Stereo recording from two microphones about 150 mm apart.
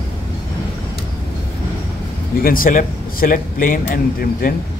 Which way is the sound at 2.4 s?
70° left (ahead or behind).